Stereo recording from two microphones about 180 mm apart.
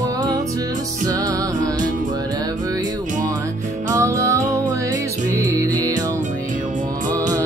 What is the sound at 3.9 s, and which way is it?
Music, 15° right (ahead or behind).